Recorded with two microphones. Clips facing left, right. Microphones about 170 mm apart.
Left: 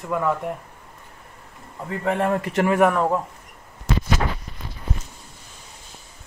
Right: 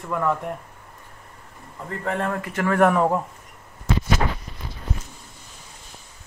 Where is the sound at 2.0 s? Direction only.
15° left (ahead or behind).